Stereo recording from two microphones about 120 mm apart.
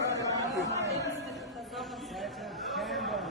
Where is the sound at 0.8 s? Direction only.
25° right (ahead or behind).